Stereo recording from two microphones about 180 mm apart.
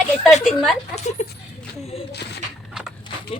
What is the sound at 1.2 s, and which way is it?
Speech, 40° left (ahead or behind).